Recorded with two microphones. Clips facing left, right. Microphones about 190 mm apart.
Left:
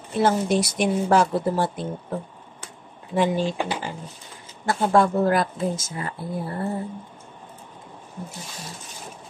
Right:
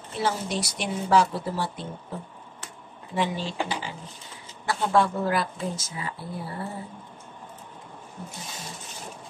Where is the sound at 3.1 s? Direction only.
50° left (ahead or behind).